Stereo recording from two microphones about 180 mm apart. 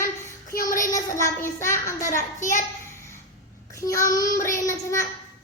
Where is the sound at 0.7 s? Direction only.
15° left (ahead or behind).